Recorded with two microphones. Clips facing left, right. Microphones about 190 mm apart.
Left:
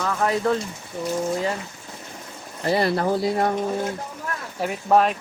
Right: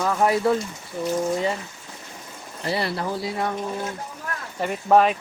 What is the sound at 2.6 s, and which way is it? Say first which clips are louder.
Speech: left 5 dB; 45° left (ahead or behind).